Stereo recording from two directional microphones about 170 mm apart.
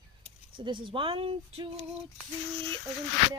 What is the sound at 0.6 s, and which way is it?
Speech, 30° right (ahead or behind).